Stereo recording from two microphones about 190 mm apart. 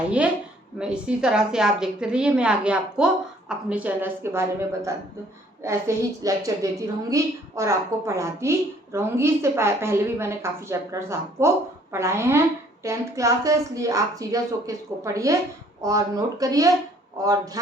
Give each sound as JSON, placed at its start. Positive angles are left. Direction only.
{"t": 0.2, "sound": "a woman's voice", "side_deg": -5}
{"t": 6.2, "sound": "a woman's voice", "side_deg": -15}